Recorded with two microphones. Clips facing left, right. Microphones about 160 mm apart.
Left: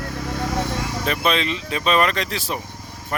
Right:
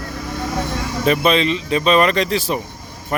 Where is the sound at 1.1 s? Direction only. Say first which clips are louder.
Right 7 dB; centre (ahead or behind).